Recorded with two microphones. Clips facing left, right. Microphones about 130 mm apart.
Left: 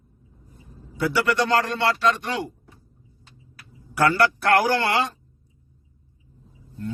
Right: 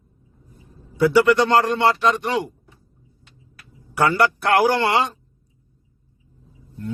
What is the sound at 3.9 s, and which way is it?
Speech, 20° right (ahead or behind).